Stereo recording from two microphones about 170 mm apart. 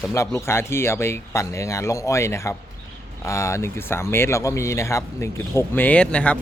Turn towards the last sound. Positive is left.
turn(degrees=5)  # may be behind; listen again after turning